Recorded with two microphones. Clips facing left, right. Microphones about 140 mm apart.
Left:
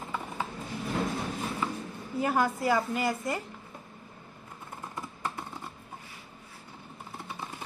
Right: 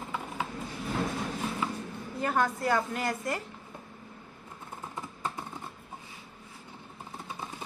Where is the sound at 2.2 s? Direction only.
5° left (ahead or behind).